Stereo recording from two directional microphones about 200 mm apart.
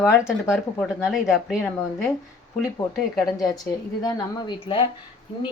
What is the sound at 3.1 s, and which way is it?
Speech, centre (ahead or behind).